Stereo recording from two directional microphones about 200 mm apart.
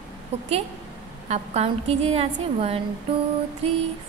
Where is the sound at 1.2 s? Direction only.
35° right (ahead or behind).